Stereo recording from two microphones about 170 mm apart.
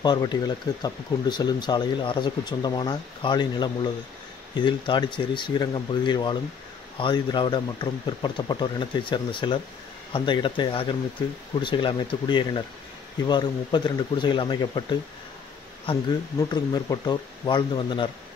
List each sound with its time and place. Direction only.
0.0 s speech: 25° left (ahead or behind)
16.3 s speech: 20° left (ahead or behind)